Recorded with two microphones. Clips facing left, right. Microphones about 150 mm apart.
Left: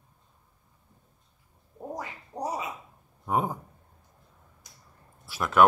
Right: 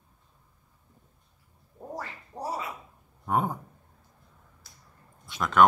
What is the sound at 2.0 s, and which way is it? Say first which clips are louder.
Quack: left 1 dB; 15° left (ahead or behind).